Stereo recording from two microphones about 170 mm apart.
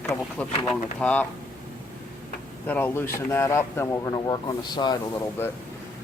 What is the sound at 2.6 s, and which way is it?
Speech, 15° left (ahead or behind).